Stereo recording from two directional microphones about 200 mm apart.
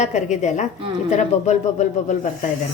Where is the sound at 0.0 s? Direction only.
35° left (ahead or behind).